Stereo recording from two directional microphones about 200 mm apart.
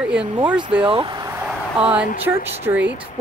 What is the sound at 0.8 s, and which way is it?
Speech, 25° right (ahead or behind).